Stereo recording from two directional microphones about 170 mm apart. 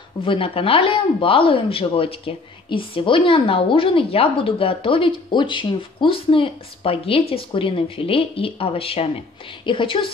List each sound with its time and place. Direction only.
0.2 s a woman's voice: 30° left (ahead or behind)